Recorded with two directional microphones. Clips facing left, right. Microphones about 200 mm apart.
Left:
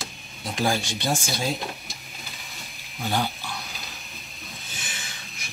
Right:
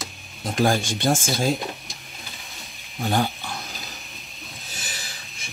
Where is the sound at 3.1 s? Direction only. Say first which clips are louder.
Right 3 dB; 45° right (ahead or behind).